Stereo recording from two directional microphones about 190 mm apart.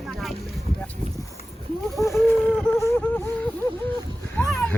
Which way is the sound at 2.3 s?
5° left (ahead or behind).